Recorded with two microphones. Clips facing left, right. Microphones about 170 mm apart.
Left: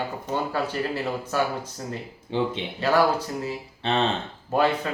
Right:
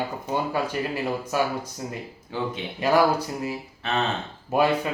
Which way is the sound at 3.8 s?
30° left (ahead or behind).